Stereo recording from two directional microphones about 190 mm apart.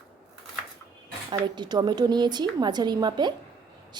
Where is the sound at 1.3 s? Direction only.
20° right (ahead or behind).